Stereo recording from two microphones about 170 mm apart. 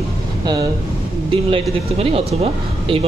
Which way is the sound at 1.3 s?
35° right (ahead or behind).